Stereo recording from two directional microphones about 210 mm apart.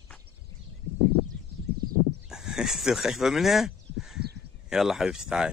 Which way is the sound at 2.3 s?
Centre (ahead or behind).